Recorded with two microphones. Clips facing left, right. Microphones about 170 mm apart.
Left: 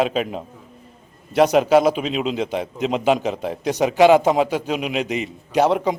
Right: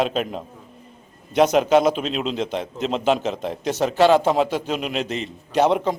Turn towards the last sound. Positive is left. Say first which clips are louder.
# left 1 dB
turn(degrees=5)  # may be behind; listen again after turning